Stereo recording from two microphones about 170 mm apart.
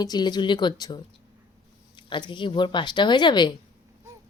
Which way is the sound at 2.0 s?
30° left (ahead or behind).